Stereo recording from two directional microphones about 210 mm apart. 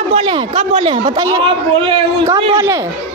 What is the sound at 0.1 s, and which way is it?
A man's voice, 25° right (ahead or behind).